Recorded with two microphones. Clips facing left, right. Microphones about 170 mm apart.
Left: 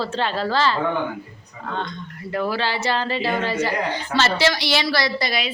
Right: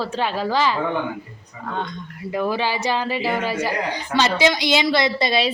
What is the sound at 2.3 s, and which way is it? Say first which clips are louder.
Speech: right 1 dB; 15° right (ahead or behind).